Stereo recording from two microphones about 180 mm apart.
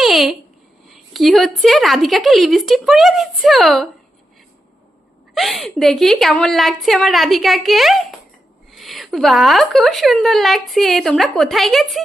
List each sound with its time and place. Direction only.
0.0 s babbling: centre (ahead or behind)
0.9 s speech: centre (ahead or behind)
5.3 s speech: centre (ahead or behind)